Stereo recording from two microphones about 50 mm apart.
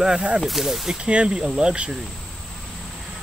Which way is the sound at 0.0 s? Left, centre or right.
Centre.